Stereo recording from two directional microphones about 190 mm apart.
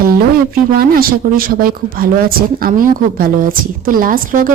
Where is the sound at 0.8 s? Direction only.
50° right (ahead or behind).